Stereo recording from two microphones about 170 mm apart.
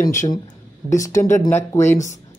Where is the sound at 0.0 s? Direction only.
20° left (ahead or behind).